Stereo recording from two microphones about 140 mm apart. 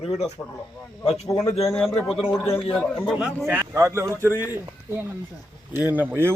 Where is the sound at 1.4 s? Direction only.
Centre (ahead or behind).